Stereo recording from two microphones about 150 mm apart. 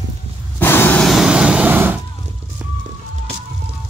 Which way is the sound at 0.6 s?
15° left (ahead or behind).